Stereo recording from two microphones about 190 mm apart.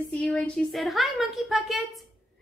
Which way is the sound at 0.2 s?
Centre (ahead or behind).